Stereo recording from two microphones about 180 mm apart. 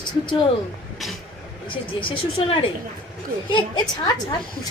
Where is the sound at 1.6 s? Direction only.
30° left (ahead or behind).